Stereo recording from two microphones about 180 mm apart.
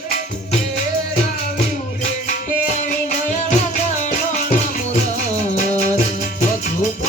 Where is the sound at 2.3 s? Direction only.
45° left (ahead or behind).